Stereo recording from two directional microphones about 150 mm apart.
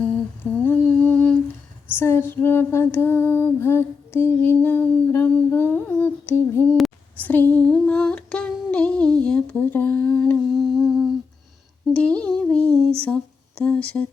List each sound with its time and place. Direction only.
0.6 s humming: 10° left (ahead or behind)
2.0 s female singing: 15° left (ahead or behind)
9.2 s humming: 10° left (ahead or behind)
11.9 s female singing: 10° left (ahead or behind)